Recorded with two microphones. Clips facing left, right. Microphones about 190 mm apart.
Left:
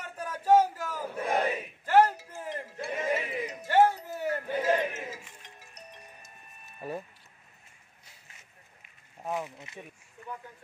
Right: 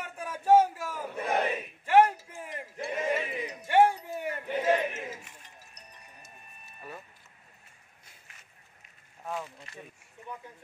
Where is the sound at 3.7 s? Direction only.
10° right (ahead or behind).